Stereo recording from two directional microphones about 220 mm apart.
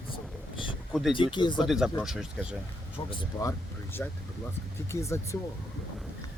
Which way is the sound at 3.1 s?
15° left (ahead or behind).